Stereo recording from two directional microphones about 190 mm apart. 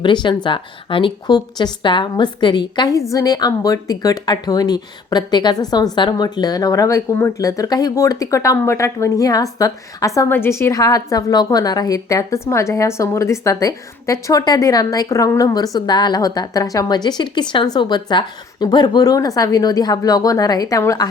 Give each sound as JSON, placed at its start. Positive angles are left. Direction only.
{"t": 0.0, "sound": "a woman's voice", "side_deg": 25}